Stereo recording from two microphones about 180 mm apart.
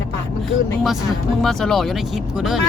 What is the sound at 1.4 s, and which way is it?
Speech, centre (ahead or behind).